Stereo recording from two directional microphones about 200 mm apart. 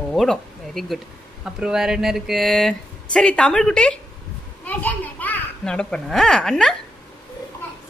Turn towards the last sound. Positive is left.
turn(degrees=5)  # may be behind; listen again after turning